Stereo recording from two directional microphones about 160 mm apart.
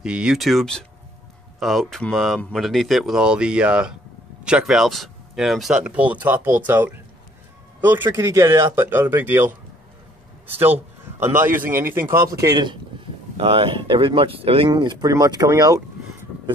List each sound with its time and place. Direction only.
0.0 s a man's voice: 5° right (ahead or behind); by 12.7 s 25° right (ahead or behind)
13.4 s speech: 35° right (ahead or behind)